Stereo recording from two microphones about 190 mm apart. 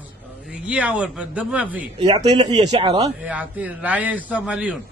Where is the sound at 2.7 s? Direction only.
25° right (ahead or behind).